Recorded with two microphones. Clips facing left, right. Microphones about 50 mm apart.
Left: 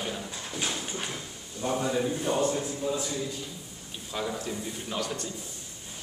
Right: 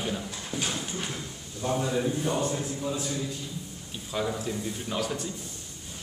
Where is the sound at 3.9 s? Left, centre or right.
Centre.